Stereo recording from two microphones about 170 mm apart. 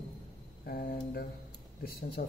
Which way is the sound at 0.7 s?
60° left (ahead or behind).